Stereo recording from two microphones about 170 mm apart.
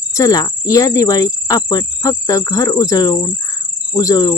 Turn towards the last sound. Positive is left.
turn(degrees=20)  # may be behind; listen again after turning